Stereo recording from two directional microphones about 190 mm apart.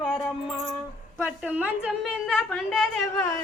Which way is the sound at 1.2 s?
5° right (ahead or behind).